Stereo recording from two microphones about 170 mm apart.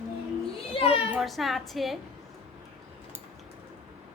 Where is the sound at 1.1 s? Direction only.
Centre (ahead or behind).